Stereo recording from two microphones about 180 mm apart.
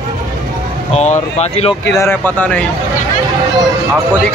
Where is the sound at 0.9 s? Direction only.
40° left (ahead or behind).